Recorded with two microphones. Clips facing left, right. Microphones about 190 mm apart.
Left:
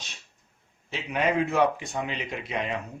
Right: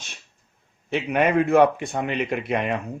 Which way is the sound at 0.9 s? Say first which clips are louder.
Right 6 dB; 60° right (ahead or behind).